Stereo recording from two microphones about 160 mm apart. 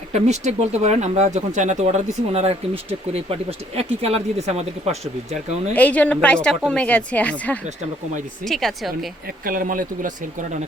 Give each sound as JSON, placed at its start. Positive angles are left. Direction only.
{"t": 0.1, "sound": "speech", "side_deg": -45}
{"t": 5.7, "sound": "a woman's voice", "side_deg": 10}
{"t": 9.4, "sound": "speech", "side_deg": -60}